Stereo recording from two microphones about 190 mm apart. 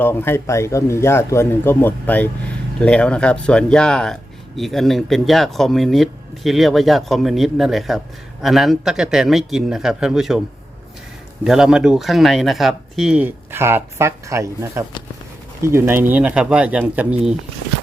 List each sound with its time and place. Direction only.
0.0 s a man's voice: 10° left (ahead or behind)
11.4 s speech: centre (ahead or behind)